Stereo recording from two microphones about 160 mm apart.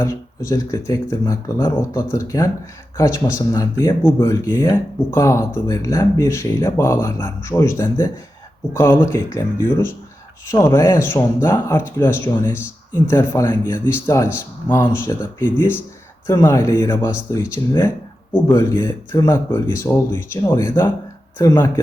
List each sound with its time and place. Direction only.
0.0 s speech: 20° left (ahead or behind)